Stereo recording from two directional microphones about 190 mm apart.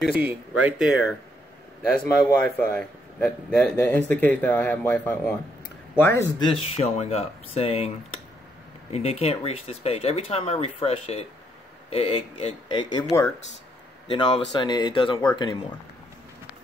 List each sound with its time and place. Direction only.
0.0 s speech: 5° right (ahead or behind)
2.0 s speech: 10° left (ahead or behind)
6.4 s speech: 35° left (ahead or behind)
8.9 s speech: 35° left (ahead or behind)
14.0 s speech: 25° left (ahead or behind)